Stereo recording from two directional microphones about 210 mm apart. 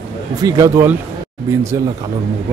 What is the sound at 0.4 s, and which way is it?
Speech, 15° right (ahead or behind).